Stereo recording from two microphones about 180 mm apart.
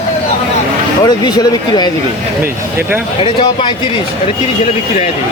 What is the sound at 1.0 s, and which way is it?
Speech, 25° left (ahead or behind).